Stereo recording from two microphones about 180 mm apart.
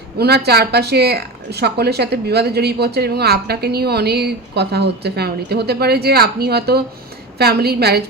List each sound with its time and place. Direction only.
0.2 s speech: 60° right (ahead or behind)